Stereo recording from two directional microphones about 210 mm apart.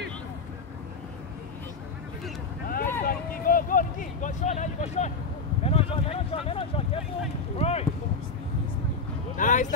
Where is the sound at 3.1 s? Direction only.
45° left (ahead or behind).